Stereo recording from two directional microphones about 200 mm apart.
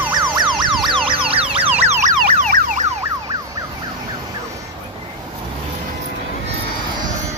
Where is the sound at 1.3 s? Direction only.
30° right (ahead or behind).